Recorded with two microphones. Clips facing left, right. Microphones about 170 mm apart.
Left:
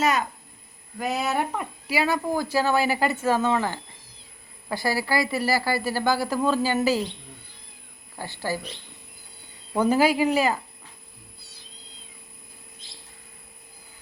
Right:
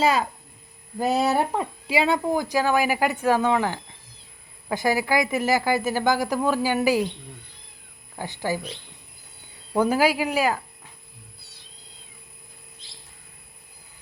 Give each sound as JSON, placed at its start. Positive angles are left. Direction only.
{"t": 0.0, "sound": "speech", "side_deg": -30}
{"t": 8.2, "sound": "speech", "side_deg": -15}
{"t": 9.7, "sound": "speech", "side_deg": -10}